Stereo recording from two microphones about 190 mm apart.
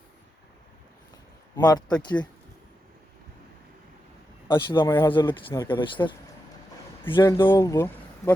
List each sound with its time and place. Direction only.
1.5 s speech: 20° left (ahead or behind)
4.4 s speech: 25° left (ahead or behind)